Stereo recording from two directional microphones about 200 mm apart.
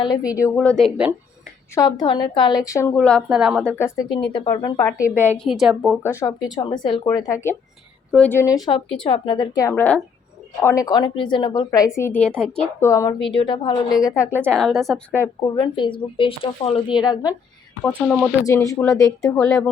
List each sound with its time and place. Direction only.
0.3 s a woman's voice: 10° left (ahead or behind)
1.7 s a woman's voice: 20° left (ahead or behind)
4.1 s a woman's voice: 25° left (ahead or behind)
4.8 s a woman's voice: 15° left (ahead or behind)
5.4 s a woman's voice: centre (ahead or behind)
6.0 s a woman's voice: 10° left (ahead or behind)
9.0 s a woman's voice: 25° left (ahead or behind); by 15.3 s 5° left (ahead or behind)
15.5 s a woman's voice: 25° left (ahead or behind)
17.8 s a woman's voice: centre (ahead or behind)
18.4 s a woman's voice: 15° left (ahead or behind)